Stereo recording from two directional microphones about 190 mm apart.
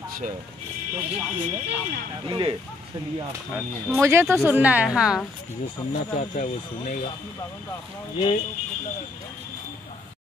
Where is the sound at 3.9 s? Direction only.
15° right (ahead or behind).